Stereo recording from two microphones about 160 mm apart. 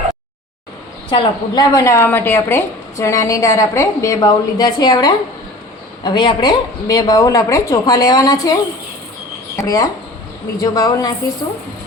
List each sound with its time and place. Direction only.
1.1 s a woman's voice: 25° left (ahead or behind)
9.6 s a woman's voice: 20° left (ahead or behind)